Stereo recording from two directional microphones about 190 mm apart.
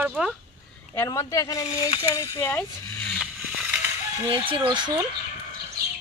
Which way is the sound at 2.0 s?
15° left (ahead or behind).